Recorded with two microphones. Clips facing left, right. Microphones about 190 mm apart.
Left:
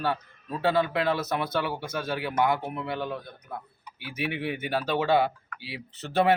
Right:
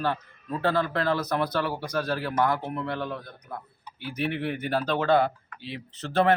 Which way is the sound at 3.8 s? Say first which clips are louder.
Right 4 dB; 30° right (ahead or behind).